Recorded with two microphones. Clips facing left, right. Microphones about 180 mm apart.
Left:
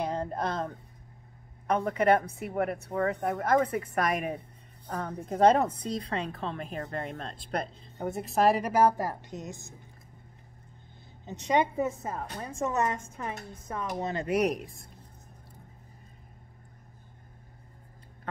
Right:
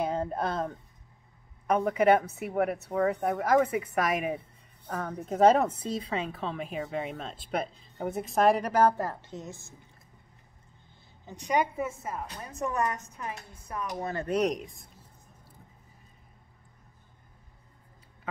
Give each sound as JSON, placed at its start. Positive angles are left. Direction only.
{"t": 0.0, "sound": "speech", "side_deg": -5}
{"t": 11.2, "sound": "a woman's voice", "side_deg": 25}